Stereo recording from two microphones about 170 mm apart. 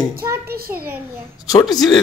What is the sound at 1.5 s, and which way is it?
Speech, 20° left (ahead or behind).